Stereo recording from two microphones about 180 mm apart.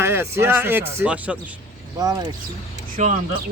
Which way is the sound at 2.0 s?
20° right (ahead or behind).